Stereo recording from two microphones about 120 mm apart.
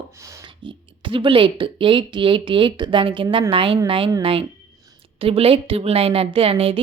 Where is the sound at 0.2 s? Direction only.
25° right (ahead or behind).